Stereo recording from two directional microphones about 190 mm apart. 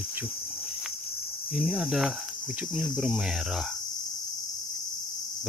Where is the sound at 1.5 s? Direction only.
Centre (ahead or behind).